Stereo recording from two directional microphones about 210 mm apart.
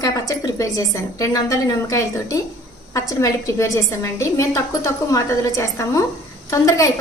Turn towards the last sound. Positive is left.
turn(degrees=15)  # may be behind; listen again after turning